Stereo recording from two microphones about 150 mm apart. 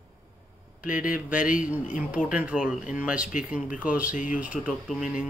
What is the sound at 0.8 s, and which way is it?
Speech, 10° right (ahead or behind).